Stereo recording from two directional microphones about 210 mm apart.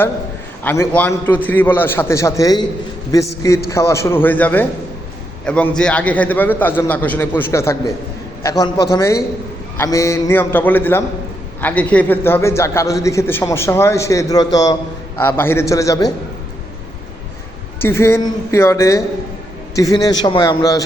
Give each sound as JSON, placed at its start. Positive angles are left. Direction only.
{"t": 0.6, "sound": "a man's voice", "side_deg": 10}
{"t": 17.7, "sound": "a man's voice", "side_deg": 10}